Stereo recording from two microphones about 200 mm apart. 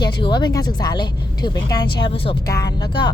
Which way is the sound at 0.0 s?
20° left (ahead or behind).